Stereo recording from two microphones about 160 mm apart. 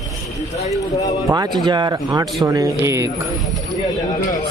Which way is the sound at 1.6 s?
25° right (ahead or behind).